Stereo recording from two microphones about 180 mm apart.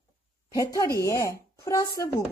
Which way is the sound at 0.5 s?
20° left (ahead or behind).